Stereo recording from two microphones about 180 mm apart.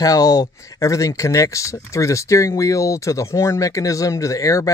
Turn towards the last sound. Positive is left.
turn(degrees=15)  # may be behind; listen again after turning